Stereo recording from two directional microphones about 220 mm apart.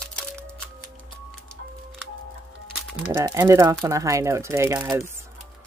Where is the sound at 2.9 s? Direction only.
5° right (ahead or behind).